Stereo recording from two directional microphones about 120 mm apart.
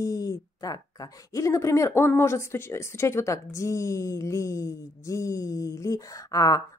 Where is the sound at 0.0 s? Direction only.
30° left (ahead or behind).